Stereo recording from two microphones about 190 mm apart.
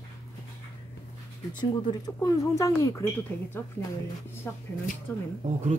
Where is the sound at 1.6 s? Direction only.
20° left (ahead or behind).